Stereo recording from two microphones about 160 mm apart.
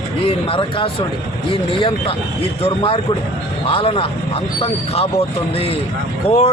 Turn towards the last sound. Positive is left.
turn(degrees=40)  # may be behind; listen again after turning